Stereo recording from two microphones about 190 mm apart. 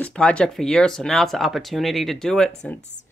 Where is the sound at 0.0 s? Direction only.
5° left (ahead or behind).